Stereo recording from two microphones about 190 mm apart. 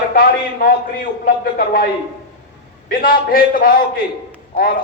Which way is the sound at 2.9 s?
50° left (ahead or behind).